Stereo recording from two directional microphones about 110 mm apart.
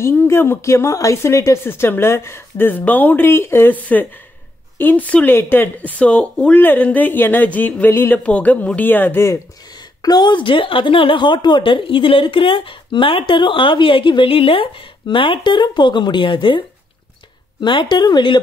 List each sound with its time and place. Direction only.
0.0 s speech: 20° left (ahead or behind)
9.8 s a woman's voice: 40° left (ahead or behind)